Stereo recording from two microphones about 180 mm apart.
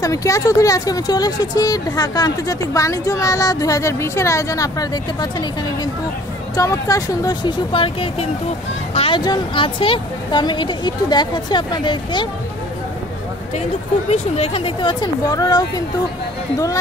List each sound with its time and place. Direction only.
0.0 s speech: 20° left (ahead or behind)
6.5 s speech: 20° left (ahead or behind)
14.1 s speech: 35° left (ahead or behind)